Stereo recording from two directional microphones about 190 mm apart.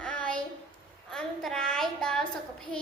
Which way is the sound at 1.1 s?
5° left (ahead or behind).